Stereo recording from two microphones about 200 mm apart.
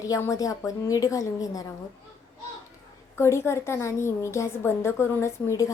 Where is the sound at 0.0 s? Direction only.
15° left (ahead or behind).